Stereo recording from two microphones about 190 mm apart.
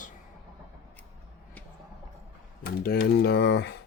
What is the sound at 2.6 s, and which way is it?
Speech, 55° left (ahead or behind).